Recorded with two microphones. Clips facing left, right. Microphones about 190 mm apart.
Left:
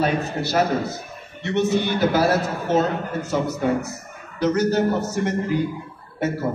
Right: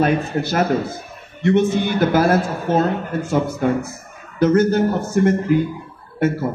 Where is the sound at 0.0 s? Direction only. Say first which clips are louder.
Right 4 dB; 50° right (ahead or behind).